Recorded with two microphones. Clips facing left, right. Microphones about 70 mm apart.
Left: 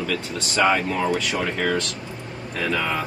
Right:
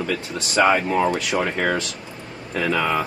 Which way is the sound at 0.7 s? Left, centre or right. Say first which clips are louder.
Right 3 dB; centre.